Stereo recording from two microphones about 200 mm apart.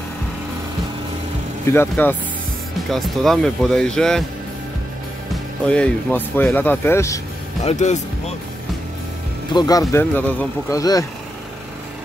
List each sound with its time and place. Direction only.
1.7 s speech: 10° left (ahead or behind)
5.7 s speech: 5° left (ahead or behind)
7.6 s speech: 35° left (ahead or behind)
9.5 s speech: 20° left (ahead or behind)